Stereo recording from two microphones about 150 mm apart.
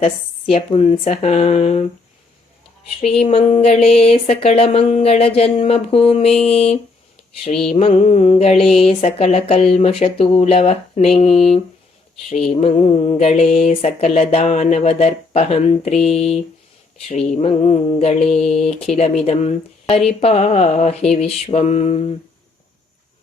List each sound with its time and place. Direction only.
0.5 s speech: 40° left (ahead or behind)
3.0 s speech: 45° left (ahead or behind)
7.5 s mantra: 5° left (ahead or behind)
7.8 s speech: 45° left (ahead or behind)